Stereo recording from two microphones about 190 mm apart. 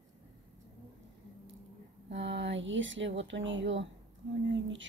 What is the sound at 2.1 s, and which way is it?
A woman's voice, 70° right (ahead or behind).